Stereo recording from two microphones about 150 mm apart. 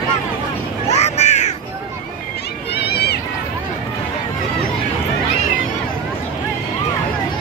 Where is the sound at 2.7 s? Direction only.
90° left.